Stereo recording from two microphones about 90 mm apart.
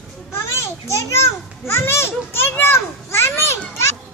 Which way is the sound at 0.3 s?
30° left (ahead or behind).